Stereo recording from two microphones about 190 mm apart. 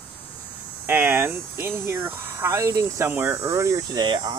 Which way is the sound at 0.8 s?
10° right (ahead or behind).